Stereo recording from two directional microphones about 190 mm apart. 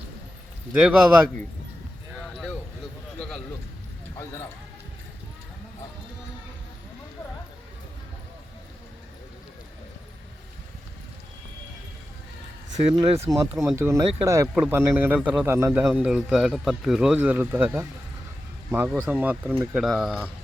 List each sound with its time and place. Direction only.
0.8 s a man's voice: 5° right (ahead or behind)
3.2 s a sound: 5° left (ahead or behind)
12.9 s a man's voice: 20° right (ahead or behind)